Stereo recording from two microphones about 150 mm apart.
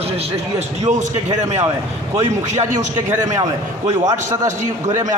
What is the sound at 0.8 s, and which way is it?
Speech, 50° right (ahead or behind).